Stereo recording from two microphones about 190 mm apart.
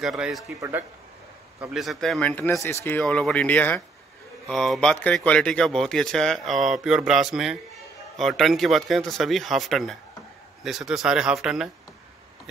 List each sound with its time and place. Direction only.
0.0 s speech: centre (ahead or behind)
0.6 s speech: 10° right (ahead or behind)
1.6 s speech: centre (ahead or behind)